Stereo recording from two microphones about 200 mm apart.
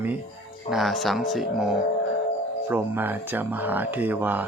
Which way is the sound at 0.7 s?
Centre (ahead or behind).